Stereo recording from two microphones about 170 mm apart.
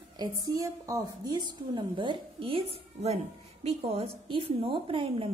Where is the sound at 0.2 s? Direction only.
20° right (ahead or behind).